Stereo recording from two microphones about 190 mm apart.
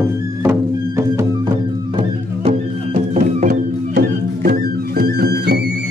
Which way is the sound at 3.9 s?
55° right (ahead or behind).